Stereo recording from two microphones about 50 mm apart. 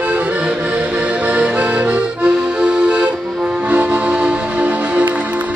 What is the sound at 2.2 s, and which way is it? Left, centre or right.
Accordion, centre.